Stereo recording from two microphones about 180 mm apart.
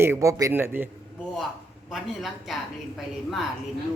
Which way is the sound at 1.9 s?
Centre (ahead or behind).